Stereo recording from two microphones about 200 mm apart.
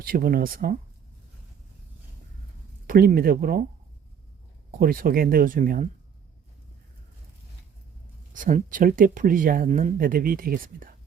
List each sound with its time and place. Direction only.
0.0 s speech: 45° right (ahead or behind)
2.8 s speech: 45° right (ahead or behind)
4.8 s speech: 45° right (ahead or behind)
8.3 s speech: 40° right (ahead or behind)